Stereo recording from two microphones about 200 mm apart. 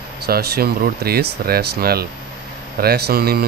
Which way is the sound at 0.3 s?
50° right (ahead or behind).